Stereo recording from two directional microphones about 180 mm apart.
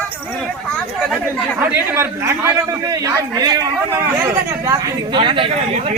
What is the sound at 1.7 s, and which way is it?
Speech, 15° right (ahead or behind).